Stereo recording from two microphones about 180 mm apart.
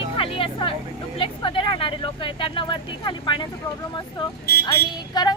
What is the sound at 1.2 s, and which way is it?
Speech, 30° left (ahead or behind).